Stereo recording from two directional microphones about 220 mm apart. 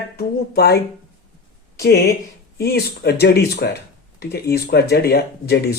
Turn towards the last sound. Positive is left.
turn(degrees=45)  # may be behind; listen again after turning